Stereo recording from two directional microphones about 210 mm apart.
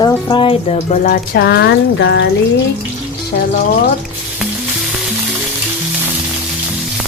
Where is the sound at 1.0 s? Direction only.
45° left (ahead or behind).